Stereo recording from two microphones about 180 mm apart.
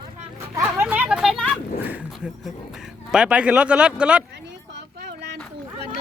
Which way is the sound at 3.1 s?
5° right (ahead or behind).